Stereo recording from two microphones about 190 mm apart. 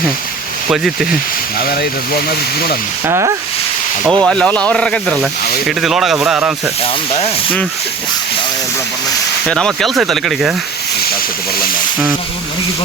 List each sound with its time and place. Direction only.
0.7 s speech: centre (ahead or behind)
1.5 s speech: 50° left (ahead or behind)
3.1 s speech: 15° right (ahead or behind)
4.2 s speech: 5° left (ahead or behind)
6.8 s rub: 30° left (ahead or behind)
9.5 s speech: 5° left (ahead or behind)